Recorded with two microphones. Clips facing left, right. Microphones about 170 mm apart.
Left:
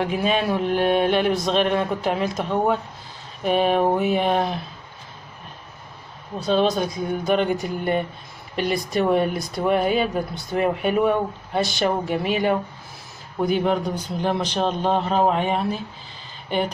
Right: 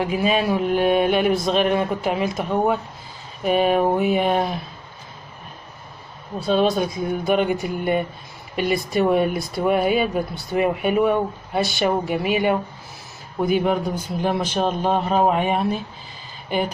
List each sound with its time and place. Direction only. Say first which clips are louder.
0.0 s speech: right 1 dB; 5° right (ahead or behind)
6.4 s speech: right 1 dB; 5° right (ahead or behind)